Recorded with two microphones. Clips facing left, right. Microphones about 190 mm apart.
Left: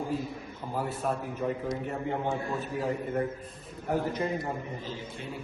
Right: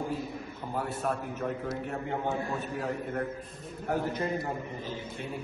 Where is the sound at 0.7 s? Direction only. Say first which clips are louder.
Left 1 dB; centre (ahead or behind).